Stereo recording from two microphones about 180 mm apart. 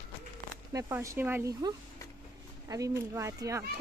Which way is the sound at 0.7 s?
15° right (ahead or behind).